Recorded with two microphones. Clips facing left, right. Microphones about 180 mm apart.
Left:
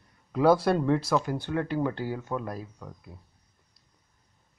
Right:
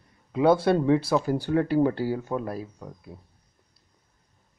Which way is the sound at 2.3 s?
20° right (ahead or behind).